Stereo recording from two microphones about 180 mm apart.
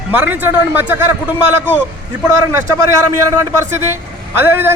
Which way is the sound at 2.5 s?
15° right (ahead or behind).